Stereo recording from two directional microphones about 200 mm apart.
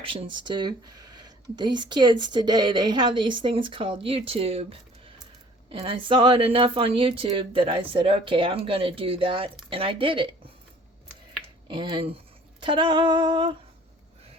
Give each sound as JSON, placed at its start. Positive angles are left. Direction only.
{"t": 0.0, "sound": "speech", "side_deg": -25}
{"t": 5.8, "sound": "speech", "side_deg": -25}
{"t": 11.7, "sound": "speech", "side_deg": -25}